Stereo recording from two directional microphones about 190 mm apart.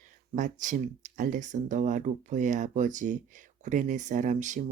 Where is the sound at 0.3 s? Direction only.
40° right (ahead or behind).